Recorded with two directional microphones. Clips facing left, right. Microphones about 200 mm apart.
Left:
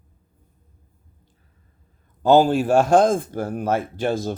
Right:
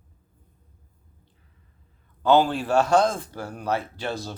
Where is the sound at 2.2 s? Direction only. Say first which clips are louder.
Left 4 dB; 45° left (ahead or behind).